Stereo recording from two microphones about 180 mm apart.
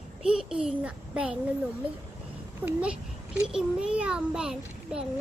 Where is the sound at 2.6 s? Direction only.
5° right (ahead or behind).